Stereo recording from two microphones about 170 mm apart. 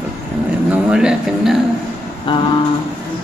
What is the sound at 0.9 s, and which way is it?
Speech, 5° right (ahead or behind).